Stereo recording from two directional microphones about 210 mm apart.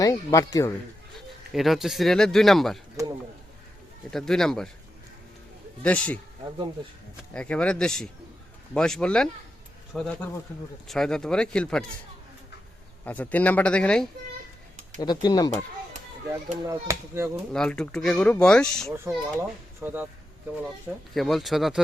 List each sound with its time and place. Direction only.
0.0 s speech: 15° left (ahead or behind)
1.5 s speech: centre (ahead or behind)
4.1 s speech: centre (ahead or behind)
5.8 s speech: 5° left (ahead or behind)
7.3 s speech: 5° left (ahead or behind)
13.1 s speech: 5° left (ahead or behind)
15.0 s speech: 20° left (ahead or behind)
16.6 s a child's voice: 15° right (ahead or behind)
17.5 s speech: 5° left (ahead or behind)
18.9 s a child's voice: 10° right (ahead or behind)
21.1 s speech: centre (ahead or behind)